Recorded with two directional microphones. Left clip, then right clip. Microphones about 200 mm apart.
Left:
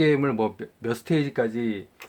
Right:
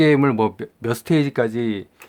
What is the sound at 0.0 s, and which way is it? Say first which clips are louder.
Speech: right 6 dB; 40° right (ahead or behind).